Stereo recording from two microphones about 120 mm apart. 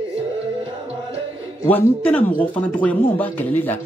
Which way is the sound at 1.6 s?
15° left (ahead or behind).